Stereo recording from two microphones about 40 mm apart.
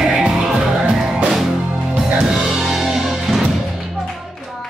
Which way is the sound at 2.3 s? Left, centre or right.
Centre.